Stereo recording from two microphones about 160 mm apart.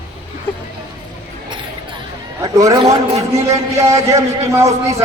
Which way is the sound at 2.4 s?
20° right (ahead or behind).